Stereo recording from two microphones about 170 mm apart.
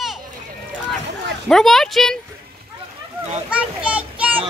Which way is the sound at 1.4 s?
Centre (ahead or behind).